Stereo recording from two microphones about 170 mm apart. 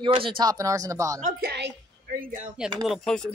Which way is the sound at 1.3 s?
75° right (ahead or behind).